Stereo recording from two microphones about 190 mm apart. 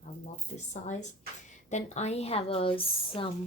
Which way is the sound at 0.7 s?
35° left (ahead or behind).